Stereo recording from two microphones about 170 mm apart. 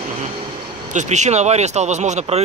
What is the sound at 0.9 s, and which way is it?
Speech, 45° right (ahead or behind).